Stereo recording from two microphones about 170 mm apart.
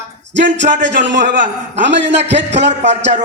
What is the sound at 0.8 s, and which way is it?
A man's voice, 90° right.